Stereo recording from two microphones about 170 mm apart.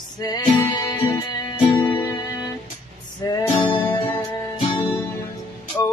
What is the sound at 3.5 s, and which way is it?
Music, 30° left (ahead or behind).